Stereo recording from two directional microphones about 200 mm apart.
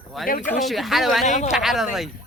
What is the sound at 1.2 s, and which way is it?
Cricket, 35° left (ahead or behind).